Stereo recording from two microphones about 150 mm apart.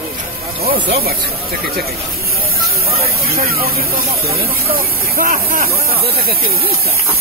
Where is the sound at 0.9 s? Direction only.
90° right; by 5.7 s 75° right (ahead or behind).